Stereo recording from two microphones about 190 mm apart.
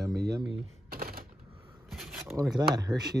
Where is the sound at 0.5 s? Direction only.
55° right (ahead or behind).